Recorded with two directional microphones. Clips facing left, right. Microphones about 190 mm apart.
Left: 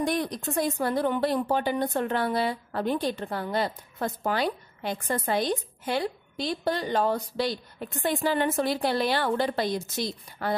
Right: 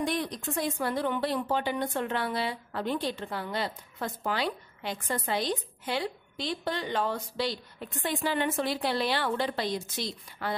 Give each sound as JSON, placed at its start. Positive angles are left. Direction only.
{"t": 0.0, "sound": "speech", "side_deg": 45}